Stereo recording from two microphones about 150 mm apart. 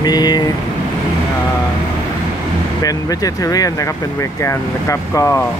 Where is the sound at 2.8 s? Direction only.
25° left (ahead or behind).